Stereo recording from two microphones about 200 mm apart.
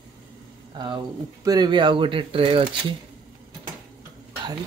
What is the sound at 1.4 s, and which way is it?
Speech, 20° right (ahead or behind).